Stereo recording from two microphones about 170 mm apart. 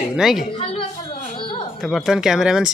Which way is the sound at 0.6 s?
35° left (ahead or behind).